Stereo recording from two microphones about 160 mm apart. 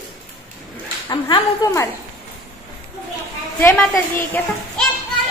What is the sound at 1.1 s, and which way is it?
Speech, 30° left (ahead or behind).